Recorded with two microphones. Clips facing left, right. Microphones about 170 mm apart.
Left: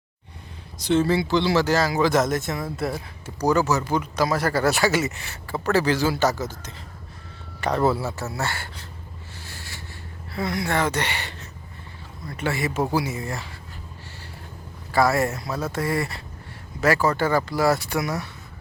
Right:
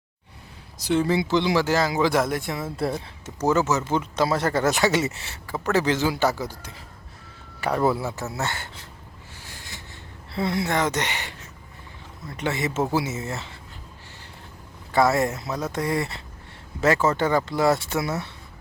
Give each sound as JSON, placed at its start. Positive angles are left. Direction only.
{"t": 0.8, "sound": "speech", "side_deg": -10}
{"t": 2.7, "sound": "speech", "side_deg": -25}
{"t": 9.5, "sound": "a sound", "side_deg": -15}
{"t": 10.3, "sound": "speech", "side_deg": -25}
{"t": 14.9, "sound": "speech", "side_deg": -20}